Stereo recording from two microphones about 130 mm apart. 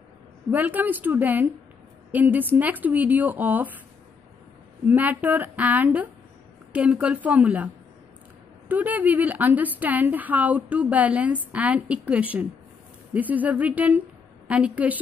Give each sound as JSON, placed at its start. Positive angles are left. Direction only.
{"t": 0.5, "sound": "a woman's voice", "side_deg": -15}
{"t": 4.8, "sound": "a woman's voice", "side_deg": -15}